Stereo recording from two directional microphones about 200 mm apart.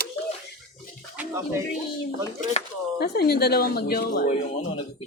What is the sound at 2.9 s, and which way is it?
Speech, 55° left (ahead or behind).